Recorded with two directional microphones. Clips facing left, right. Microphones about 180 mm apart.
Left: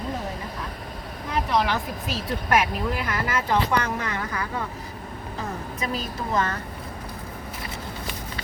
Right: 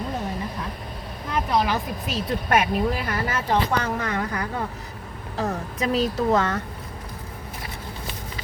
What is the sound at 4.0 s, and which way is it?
Speech, 55° right (ahead or behind).